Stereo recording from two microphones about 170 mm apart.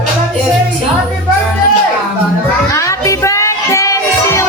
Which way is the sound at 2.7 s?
20° left (ahead or behind).